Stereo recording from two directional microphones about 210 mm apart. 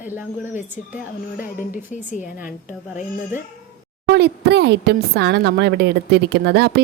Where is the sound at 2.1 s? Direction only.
35° left (ahead or behind).